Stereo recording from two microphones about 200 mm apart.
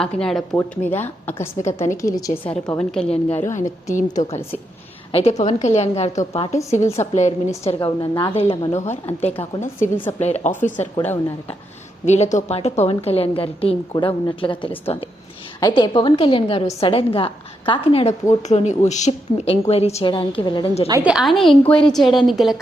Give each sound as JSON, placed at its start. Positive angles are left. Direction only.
{"t": 0.0, "sound": "a woman's voice", "side_deg": 0}
{"t": 2.4, "sound": "a woman's voice", "side_deg": 25}
{"t": 2.7, "sound": "a woman's voice", "side_deg": 5}
{"t": 3.1, "sound": "a woman's voice", "side_deg": 30}
{"t": 5.1, "sound": "a woman's voice", "side_deg": 30}
{"t": 9.9, "sound": "a woman's voice", "side_deg": 10}
{"t": 10.2, "sound": "a woman's voice", "side_deg": 35}
{"t": 11.0, "sound": "a woman's voice", "side_deg": 10}
{"t": 12.0, "sound": "a woman's voice", "side_deg": 35}
{"t": 21.0, "sound": "a woman's voice", "side_deg": -5}